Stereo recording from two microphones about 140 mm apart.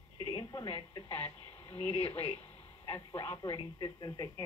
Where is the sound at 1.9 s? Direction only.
45° left (ahead or behind).